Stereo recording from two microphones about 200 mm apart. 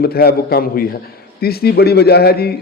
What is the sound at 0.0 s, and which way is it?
A man's voice, 50° left (ahead or behind).